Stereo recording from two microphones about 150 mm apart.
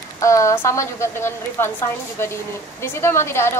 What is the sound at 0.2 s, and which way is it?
A woman's voice, 20° left (ahead or behind).